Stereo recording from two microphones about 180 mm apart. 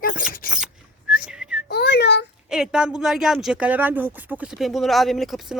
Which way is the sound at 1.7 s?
65° left (ahead or behind).